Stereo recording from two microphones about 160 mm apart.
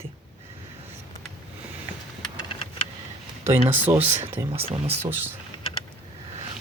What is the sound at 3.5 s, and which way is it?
Speech, 10° right (ahead or behind).